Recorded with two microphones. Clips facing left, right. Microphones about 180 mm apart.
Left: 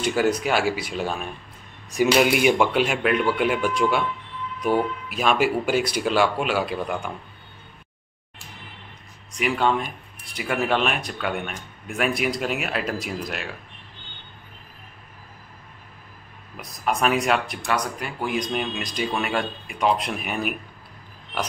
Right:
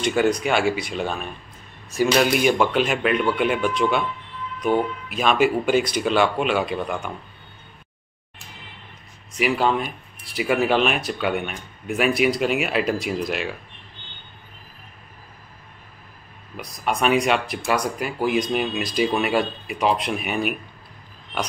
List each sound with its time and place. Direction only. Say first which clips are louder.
0.0 s speech: right 2 dB; 5° left (ahead or behind)
10.2 s speech: right 5 dB; 5° right (ahead or behind)
16.5 s speech: even; centre (ahead or behind)